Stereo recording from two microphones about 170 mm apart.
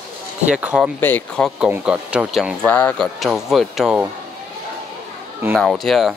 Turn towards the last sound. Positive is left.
turn(degrees=0)  # may be behind; listen again after turning